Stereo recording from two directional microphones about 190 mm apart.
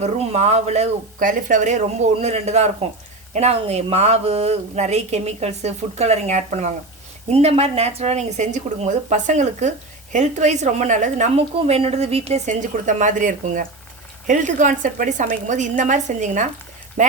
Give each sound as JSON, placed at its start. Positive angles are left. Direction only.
{"t": 0.0, "sound": "speech", "side_deg": -35}